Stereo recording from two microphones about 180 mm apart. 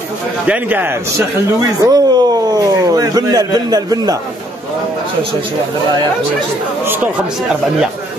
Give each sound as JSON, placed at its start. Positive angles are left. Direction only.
{"t": 0.5, "sound": "a man's voice", "side_deg": -10}